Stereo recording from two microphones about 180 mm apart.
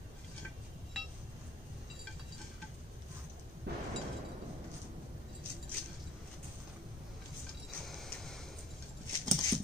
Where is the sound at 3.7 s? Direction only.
65° right (ahead or behind).